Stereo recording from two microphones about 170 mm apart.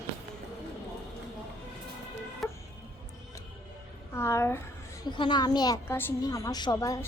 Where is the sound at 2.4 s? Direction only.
Centre (ahead or behind).